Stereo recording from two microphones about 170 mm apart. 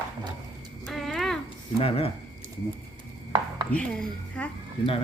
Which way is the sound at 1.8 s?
35° left (ahead or behind).